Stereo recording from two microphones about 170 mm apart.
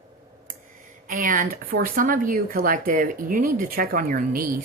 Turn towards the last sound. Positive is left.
turn(degrees=-55)  # may be behind; listen again after turning